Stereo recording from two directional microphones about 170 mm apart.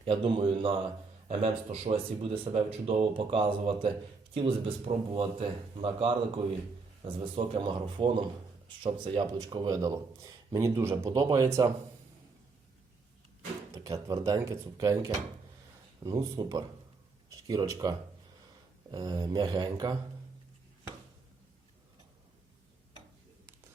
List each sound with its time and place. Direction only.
0.0 s speech: 30° right (ahead or behind)
13.8 s speech: 20° right (ahead or behind)